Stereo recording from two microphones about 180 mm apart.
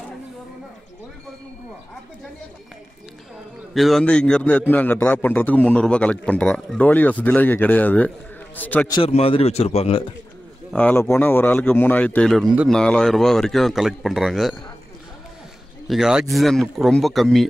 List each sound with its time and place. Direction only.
3.7 s a man's voice: centre (ahead or behind)
8.8 s a man's voice: 20° left (ahead or behind)
9.1 s speech: 35° left (ahead or behind)
10.7 s a man's voice: 10° left (ahead or behind)
15.9 s a man's voice: 5° right (ahead or behind)